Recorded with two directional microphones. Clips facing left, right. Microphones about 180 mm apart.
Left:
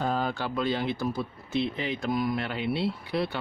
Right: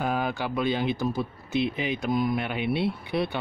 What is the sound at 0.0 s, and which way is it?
Speech, 10° right (ahead or behind).